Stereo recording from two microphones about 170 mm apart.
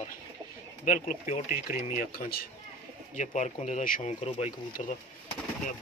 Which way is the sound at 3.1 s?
45° left (ahead or behind).